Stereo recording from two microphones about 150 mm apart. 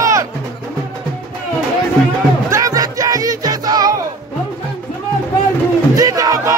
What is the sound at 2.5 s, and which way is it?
Music, 25° right (ahead or behind).